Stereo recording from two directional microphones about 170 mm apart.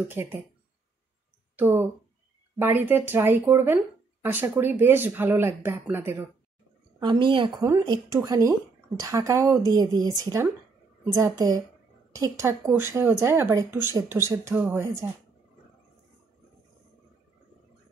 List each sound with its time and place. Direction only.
0.1 s speech: 15° right (ahead or behind)
1.6 s speech: 10° right (ahead or behind)
7.0 s speech: 25° right (ahead or behind)